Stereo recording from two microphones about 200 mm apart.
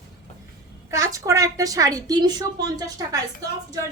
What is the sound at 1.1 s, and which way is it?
A woman's voice, 15° right (ahead or behind).